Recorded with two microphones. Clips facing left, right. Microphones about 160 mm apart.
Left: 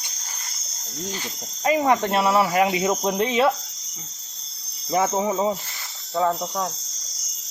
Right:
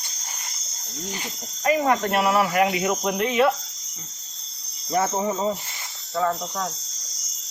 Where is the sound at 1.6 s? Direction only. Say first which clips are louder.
Left 1 dB; 25° left (ahead or behind).